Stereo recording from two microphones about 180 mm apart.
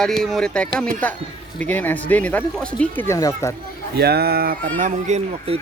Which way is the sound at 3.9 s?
60° right (ahead or behind).